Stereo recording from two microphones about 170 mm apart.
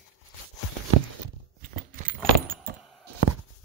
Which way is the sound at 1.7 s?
55° right (ahead or behind).